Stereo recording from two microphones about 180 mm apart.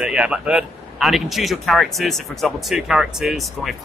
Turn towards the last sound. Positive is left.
turn(degrees=0)  # may be behind; listen again after turning